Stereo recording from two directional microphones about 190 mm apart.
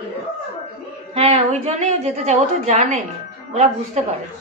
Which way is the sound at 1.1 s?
30° right (ahead or behind).